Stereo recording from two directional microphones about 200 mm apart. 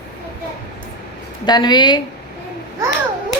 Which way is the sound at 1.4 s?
20° left (ahead or behind).